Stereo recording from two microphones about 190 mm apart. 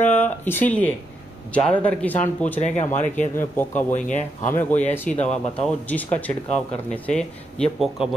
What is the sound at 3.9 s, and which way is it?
Speech, 40° left (ahead or behind).